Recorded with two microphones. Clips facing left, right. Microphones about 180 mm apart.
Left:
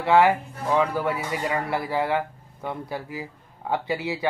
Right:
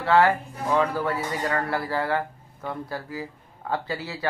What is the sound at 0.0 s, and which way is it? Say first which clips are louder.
Speech: left 1 dB; 15° left (ahead or behind).